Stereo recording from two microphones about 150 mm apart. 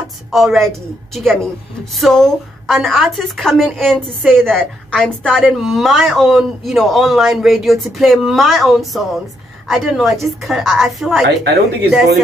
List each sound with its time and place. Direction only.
0.3 s a woman's voice: centre (ahead or behind)
11.2 s speech: 90° right